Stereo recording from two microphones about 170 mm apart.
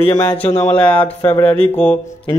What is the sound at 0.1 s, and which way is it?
Speech, 20° left (ahead or behind).